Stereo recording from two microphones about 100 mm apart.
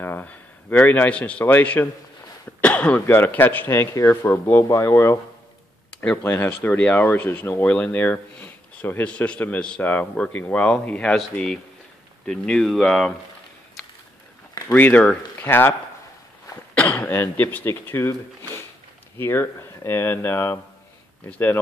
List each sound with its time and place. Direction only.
0.0 s speech: 20° left (ahead or behind)
2.6 s cough: 15° left (ahead or behind)
3.1 s speech: 20° left (ahead or behind); by 13.1 s 5° left (ahead or behind)
14.7 s speech: 15° left (ahead or behind)
16.7 s speech: 15° left (ahead or behind)
19.1 s speech: 25° left (ahead or behind)